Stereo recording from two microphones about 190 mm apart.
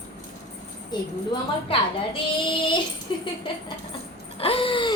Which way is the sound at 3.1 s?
25° left (ahead or behind).